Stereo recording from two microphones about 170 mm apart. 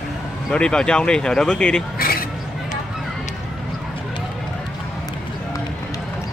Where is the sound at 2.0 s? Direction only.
60° left (ahead or behind).